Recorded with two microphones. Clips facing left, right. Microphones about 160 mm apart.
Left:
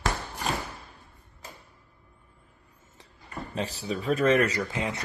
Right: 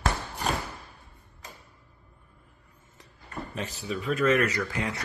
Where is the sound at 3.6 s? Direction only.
35° left (ahead or behind).